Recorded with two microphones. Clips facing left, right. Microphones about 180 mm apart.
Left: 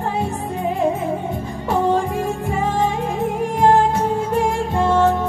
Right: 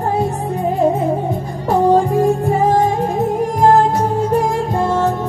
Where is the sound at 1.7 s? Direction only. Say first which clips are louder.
Right 6 dB; 40° right (ahead or behind).